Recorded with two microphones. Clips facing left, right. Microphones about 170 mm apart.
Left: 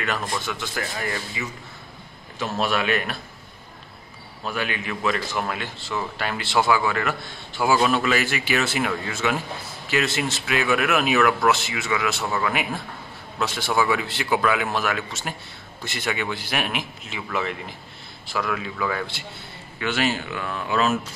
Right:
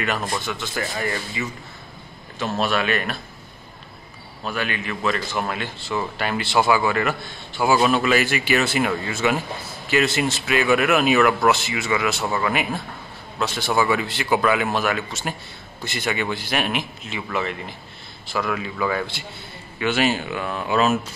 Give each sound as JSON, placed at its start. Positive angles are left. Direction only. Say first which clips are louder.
{"t": 0.5, "sound": "a man's voice", "louder": "right 2 dB", "side_deg": 0}
{"t": 2.4, "sound": "a man's voice", "louder": "right 1 dB", "side_deg": 10}
{"t": 4.6, "sound": "a man's voice", "louder": "right 1 dB", "side_deg": 10}
{"t": 13.4, "sound": "a man's voice", "louder": "right 1 dB", "side_deg": 5}